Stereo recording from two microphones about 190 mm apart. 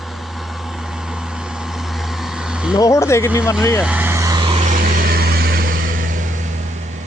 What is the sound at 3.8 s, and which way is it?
Vehicle, 5° right (ahead or behind).